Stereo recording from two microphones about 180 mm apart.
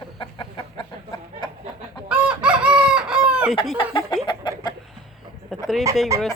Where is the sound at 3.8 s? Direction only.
25° left (ahead or behind).